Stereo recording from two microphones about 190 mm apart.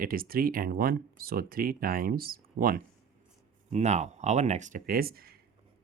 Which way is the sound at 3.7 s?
35° right (ahead or behind).